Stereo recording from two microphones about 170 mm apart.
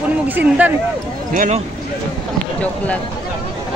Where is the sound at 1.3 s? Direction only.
50° right (ahead or behind).